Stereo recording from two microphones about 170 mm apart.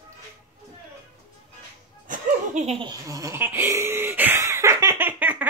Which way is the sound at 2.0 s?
50° right (ahead or behind).